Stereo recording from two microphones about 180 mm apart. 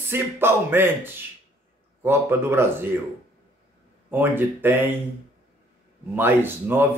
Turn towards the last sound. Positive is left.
turn(degrees=-10)  # may be behind; listen again after turning